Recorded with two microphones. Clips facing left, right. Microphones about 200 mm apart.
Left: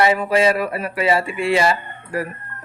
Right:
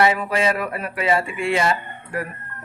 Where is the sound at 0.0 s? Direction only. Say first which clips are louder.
Left 3 dB; centre (ahead or behind).